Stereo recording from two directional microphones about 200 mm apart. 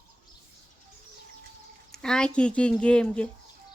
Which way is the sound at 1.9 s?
5° left (ahead or behind).